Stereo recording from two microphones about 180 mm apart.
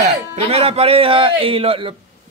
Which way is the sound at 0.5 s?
30° right (ahead or behind).